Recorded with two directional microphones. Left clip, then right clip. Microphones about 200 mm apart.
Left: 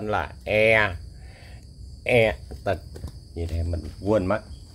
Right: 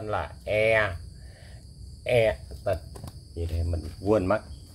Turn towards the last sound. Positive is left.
turn(degrees=5)  # may be behind; listen again after turning